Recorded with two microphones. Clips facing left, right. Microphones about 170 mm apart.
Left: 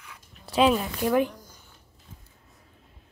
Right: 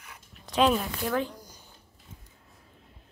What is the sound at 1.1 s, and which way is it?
Speech, 15° left (ahead or behind).